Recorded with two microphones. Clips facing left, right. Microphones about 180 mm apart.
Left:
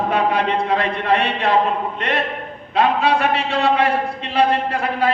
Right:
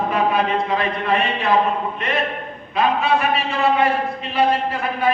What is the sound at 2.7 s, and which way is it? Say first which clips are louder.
A man's voice: left 2 dB; 75° left (ahead or behind).